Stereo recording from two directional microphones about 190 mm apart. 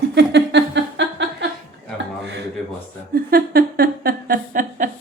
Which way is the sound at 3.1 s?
50° right (ahead or behind).